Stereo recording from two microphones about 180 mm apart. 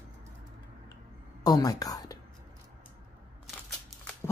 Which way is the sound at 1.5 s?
20° left (ahead or behind).